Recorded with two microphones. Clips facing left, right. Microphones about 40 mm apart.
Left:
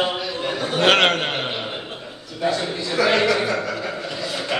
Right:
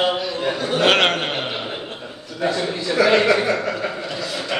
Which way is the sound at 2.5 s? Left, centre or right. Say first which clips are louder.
Right 3 dB; right.